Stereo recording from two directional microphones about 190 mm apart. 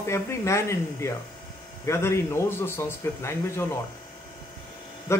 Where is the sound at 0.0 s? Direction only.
15° left (ahead or behind).